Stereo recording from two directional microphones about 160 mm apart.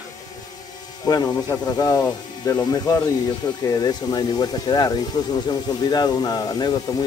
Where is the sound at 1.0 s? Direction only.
25° left (ahead or behind).